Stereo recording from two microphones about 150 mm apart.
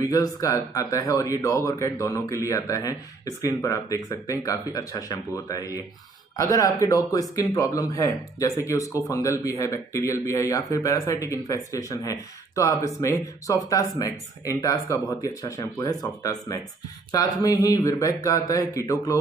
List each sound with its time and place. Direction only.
0.0 s speech: 25° left (ahead or behind)